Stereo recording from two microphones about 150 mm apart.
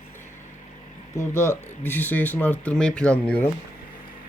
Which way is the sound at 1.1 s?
15° left (ahead or behind).